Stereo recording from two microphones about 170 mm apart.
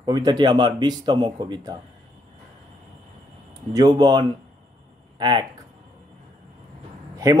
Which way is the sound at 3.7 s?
25° right (ahead or behind).